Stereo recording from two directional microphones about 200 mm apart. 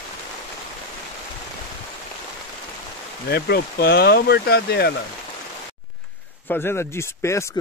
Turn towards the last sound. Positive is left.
turn(degrees=15)  # may be behind; listen again after turning